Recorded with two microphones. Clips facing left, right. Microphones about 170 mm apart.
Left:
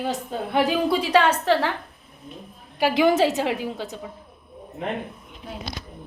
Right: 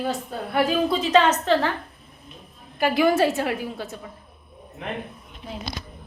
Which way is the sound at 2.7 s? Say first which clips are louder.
Left 1 dB; 15° left (ahead or behind).